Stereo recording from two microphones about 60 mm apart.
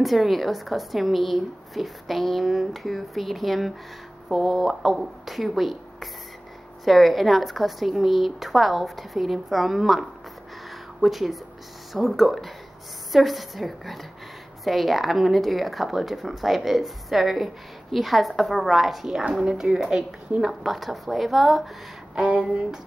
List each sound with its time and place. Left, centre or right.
0.0 s a woman's voice: centre
20.6 s a woman's voice: centre
22.1 s a woman's voice: centre